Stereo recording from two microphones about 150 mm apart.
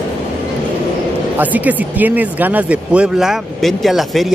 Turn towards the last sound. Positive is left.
turn(degrees=0)  # may be behind; listen again after turning